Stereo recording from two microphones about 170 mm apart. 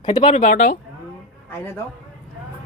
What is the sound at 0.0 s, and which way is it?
Speech, 30° left (ahead or behind).